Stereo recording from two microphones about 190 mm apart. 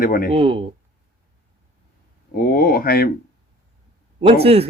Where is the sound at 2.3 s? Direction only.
50° left (ahead or behind).